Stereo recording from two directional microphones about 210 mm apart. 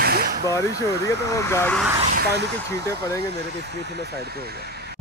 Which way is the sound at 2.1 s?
50° right (ahead or behind).